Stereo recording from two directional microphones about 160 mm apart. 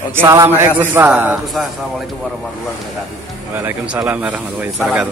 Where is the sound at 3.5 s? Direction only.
15° right (ahead or behind).